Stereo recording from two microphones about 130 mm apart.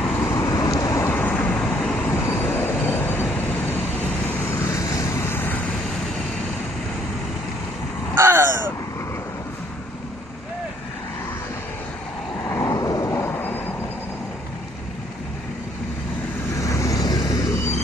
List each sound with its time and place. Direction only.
0.0 s vehicle: 5° left (ahead or behind)
0.4 s vehicle: 25° left (ahead or behind); by 2.1 s 5° left (ahead or behind)
2.2 s train: 15° left (ahead or behind)
8.2 s crow: 20° right (ahead or behind)
12.4 s vehicle: 25° left (ahead or behind)
16.5 s vehicle: 25° left (ahead or behind)